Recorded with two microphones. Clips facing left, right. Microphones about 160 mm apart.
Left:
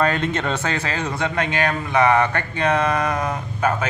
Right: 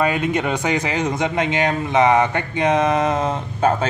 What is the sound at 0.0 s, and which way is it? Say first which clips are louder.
Speech: right 2 dB; 10° right (ahead or behind).